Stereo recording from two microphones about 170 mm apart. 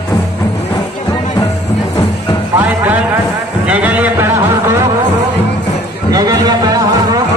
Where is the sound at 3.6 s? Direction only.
10° right (ahead or behind).